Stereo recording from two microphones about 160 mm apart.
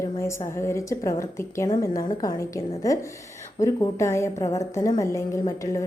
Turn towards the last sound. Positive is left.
turn(degrees=20)  # may be behind; listen again after turning